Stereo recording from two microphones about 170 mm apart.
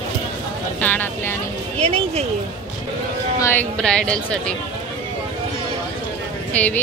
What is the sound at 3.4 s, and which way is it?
Speech, 10° left (ahead or behind).